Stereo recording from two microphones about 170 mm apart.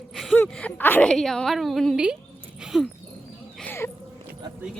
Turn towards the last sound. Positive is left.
turn(degrees=10)  # may be behind; listen again after turning